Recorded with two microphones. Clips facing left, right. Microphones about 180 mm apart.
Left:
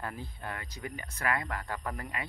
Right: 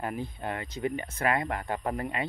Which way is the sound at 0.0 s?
20° right (ahead or behind).